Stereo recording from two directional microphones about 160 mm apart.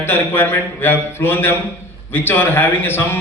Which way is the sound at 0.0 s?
15° left (ahead or behind).